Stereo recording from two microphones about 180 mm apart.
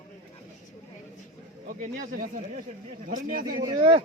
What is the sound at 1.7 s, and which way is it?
A man's voice, 50° right (ahead or behind).